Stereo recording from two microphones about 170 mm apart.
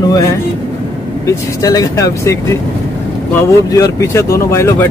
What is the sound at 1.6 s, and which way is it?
Speech, 20° left (ahead or behind).